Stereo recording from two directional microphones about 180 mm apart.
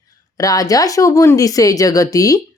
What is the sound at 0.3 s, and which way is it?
A woman's voice, 20° left (ahead or behind).